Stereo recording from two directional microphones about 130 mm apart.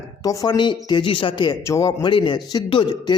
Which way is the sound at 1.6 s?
25° left (ahead or behind).